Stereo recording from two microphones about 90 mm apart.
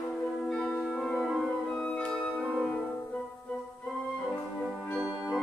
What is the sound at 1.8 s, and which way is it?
Music, 10° left (ahead or behind).